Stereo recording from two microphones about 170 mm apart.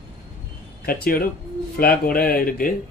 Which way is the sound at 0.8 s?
60° left (ahead or behind).